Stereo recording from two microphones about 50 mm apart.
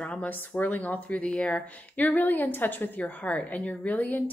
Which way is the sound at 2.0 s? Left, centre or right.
Left.